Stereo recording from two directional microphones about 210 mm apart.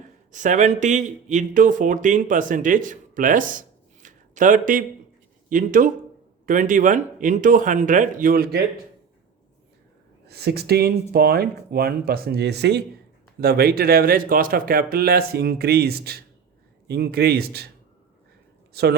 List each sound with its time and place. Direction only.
0.3 s speech: 35° right (ahead or behind)
10.2 s speech: 50° right (ahead or behind)
18.7 s speech: 50° right (ahead or behind)